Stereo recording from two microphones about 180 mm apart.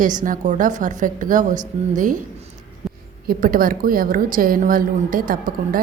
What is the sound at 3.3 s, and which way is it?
A woman's voice, 50° right (ahead or behind).